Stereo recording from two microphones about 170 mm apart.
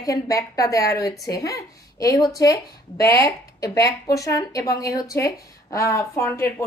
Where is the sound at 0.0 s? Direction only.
20° left (ahead or behind).